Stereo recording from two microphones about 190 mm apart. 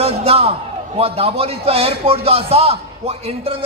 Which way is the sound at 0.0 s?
30° right (ahead or behind).